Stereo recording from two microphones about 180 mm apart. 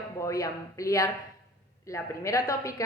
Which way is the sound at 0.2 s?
20° left (ahead or behind).